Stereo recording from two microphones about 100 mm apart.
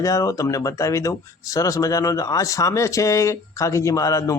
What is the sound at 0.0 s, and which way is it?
Speech, 35° left (ahead or behind).